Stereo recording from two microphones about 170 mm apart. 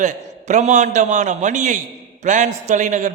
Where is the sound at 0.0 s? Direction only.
45° right (ahead or behind).